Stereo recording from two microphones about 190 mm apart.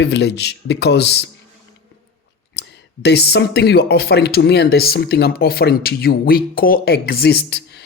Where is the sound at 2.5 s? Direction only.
65° left (ahead or behind).